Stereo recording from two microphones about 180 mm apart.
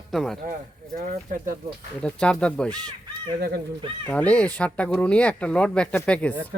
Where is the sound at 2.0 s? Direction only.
5° left (ahead or behind).